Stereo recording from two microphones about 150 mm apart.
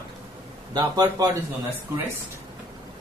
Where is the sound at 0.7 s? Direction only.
25° right (ahead or behind).